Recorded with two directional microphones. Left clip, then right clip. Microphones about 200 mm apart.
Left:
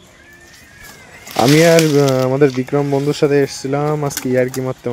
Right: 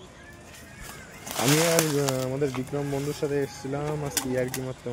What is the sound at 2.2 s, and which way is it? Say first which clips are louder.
Speech: left 14 dB; 35° left (ahead or behind).